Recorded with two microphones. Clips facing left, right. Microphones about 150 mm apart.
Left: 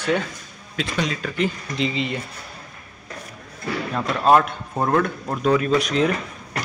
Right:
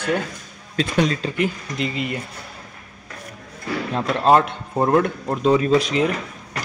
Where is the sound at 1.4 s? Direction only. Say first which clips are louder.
Even; 5° right (ahead or behind).